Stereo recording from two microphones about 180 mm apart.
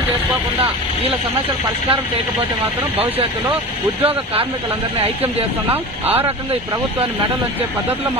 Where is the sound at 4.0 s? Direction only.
30° right (ahead or behind).